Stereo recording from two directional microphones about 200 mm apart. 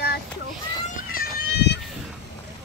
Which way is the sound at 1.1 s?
50° left (ahead or behind).